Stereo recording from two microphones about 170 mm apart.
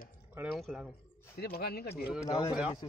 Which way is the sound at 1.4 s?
65° left (ahead or behind).